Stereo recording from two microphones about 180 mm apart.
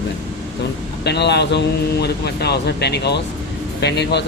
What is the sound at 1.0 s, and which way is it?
Speech, 70° left (ahead or behind).